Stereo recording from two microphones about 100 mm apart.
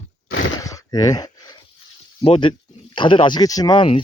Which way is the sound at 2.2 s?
55° left (ahead or behind).